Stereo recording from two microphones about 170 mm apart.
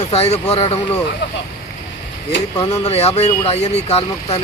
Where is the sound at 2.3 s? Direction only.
90° left.